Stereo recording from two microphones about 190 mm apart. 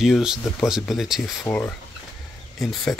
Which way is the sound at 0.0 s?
Centre (ahead or behind).